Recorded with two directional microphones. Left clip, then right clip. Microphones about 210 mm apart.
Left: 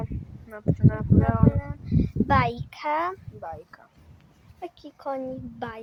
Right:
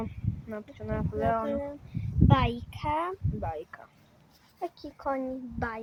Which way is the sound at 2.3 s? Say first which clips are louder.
Left 4 dB; 35° left (ahead or behind).